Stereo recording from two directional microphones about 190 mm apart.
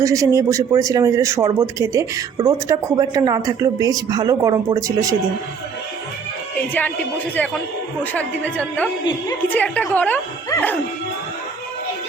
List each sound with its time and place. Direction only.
0.0 s speech: 15° right (ahead or behind)
6.7 s speech: 10° left (ahead or behind)